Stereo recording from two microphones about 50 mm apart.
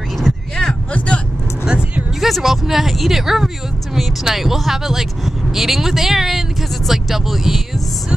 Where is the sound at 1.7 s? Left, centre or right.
Centre.